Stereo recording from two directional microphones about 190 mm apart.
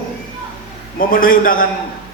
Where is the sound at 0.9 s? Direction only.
50° left (ahead or behind).